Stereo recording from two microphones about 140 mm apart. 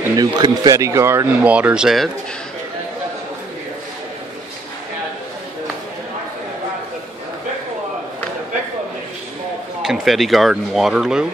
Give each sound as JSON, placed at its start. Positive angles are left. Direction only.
{"t": 0.0, "sound": "speech", "side_deg": -25}
{"t": 9.8, "sound": "speech", "side_deg": 0}